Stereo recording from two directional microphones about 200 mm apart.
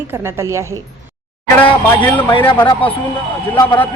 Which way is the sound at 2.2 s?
20° left (ahead or behind).